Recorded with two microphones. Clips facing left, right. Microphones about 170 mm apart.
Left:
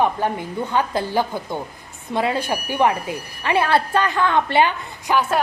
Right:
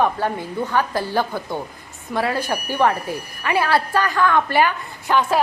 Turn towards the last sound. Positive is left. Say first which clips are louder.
# even
turn(degrees=25)  # may be behind; listen again after turning